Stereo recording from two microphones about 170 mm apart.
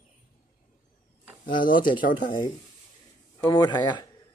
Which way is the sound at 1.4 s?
55° left (ahead or behind).